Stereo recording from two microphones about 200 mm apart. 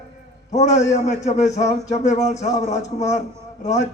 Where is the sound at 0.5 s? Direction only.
35° left (ahead or behind).